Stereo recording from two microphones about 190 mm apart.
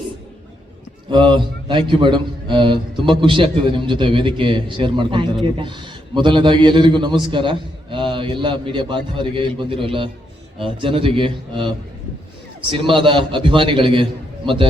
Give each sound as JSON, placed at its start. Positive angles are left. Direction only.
{"t": 1.1, "sound": "a man's voice", "side_deg": -25}
{"t": 12.7, "sound": "a man's voice", "side_deg": -25}